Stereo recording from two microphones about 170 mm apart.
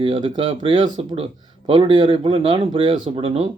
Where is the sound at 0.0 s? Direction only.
30° right (ahead or behind).